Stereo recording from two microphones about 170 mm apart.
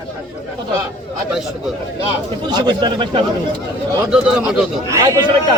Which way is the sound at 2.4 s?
25° right (ahead or behind).